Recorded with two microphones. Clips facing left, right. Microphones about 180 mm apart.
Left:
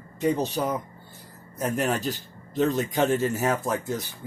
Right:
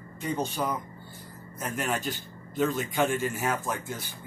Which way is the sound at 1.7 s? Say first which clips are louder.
Left 3 dB; 40° left (ahead or behind).